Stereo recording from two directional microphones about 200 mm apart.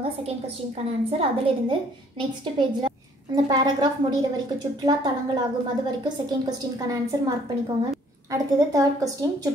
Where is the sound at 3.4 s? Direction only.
20° right (ahead or behind).